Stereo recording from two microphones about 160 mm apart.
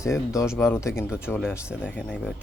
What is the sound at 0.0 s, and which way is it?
Speech, 20° left (ahead or behind).